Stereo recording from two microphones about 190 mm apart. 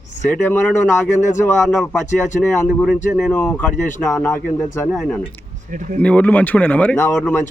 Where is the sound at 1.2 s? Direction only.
40° left (ahead or behind).